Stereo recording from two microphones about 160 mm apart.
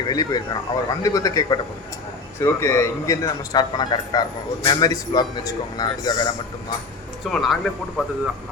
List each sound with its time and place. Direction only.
0.1 s a man's voice: 25° left (ahead or behind)
7.3 s speech: centre (ahead or behind)